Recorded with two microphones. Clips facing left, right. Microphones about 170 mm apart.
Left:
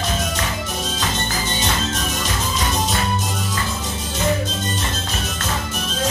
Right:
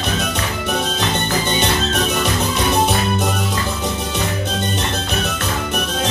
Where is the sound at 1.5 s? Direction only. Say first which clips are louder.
Right 4 dB; 65° right (ahead or behind).